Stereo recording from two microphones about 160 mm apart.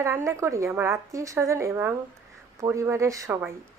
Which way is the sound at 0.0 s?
15° right (ahead or behind).